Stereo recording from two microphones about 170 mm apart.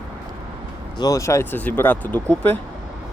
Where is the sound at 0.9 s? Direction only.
20° left (ahead or behind).